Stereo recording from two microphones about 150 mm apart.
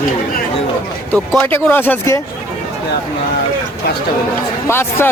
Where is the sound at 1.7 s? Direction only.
15° left (ahead or behind).